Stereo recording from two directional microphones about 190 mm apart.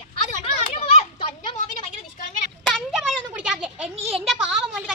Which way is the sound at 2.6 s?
Centre (ahead or behind).